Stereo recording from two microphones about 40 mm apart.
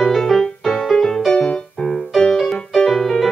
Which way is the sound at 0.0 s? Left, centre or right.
Centre.